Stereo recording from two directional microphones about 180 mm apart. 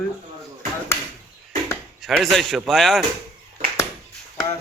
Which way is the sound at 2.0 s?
Centre (ahead or behind).